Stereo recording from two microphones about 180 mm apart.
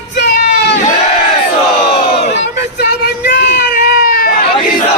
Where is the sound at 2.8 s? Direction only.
65° left (ahead or behind).